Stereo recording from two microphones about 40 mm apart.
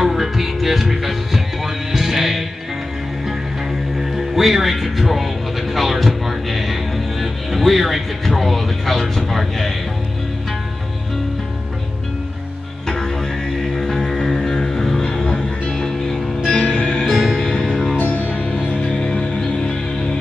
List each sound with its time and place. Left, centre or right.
0.0 s music: centre
4.0 s music: centre
12.8 s didgeridoo: centre
13.7 s music: centre
17.0 s music: centre
17.4 s music: centre
17.9 s music: left
18.3 s music: right
18.6 s music: left
18.9 s music: left